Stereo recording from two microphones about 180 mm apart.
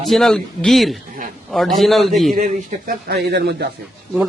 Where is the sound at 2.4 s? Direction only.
55° right (ahead or behind).